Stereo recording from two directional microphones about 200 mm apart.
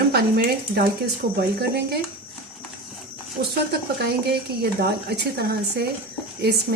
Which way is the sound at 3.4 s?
55° right (ahead or behind).